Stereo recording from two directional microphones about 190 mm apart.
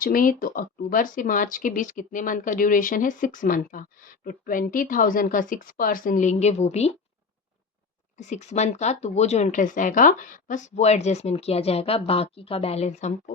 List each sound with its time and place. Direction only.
0.0 s speech: 45° left (ahead or behind)
8.2 s speech: 35° left (ahead or behind)